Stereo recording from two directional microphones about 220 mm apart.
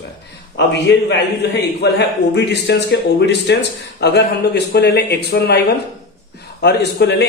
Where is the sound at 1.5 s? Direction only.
50° left (ahead or behind).